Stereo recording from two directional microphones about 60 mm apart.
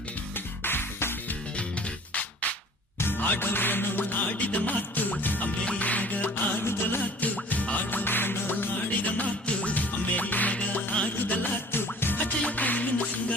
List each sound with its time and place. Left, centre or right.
0.3 s music: left
2.1 s music: left
3.0 s music: left
4.3 s music: left
5.6 s music: left
11.7 s music: left